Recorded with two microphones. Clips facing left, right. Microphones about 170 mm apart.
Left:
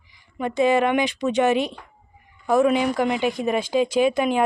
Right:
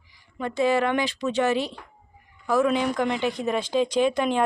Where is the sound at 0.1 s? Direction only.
15° left (ahead or behind).